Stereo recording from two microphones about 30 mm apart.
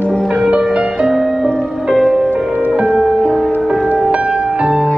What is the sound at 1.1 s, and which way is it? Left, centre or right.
Music, centre.